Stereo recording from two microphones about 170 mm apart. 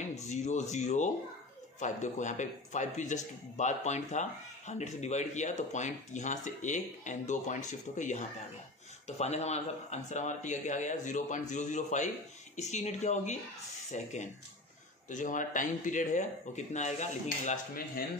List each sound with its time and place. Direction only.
0.3 s a man's voice: 45° left (ahead or behind)